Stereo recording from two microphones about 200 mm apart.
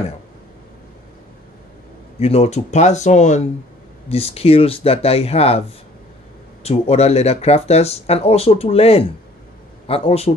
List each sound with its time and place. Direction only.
2.1 s speech: 30° left (ahead or behind)
6.6 s speech: 30° left (ahead or behind)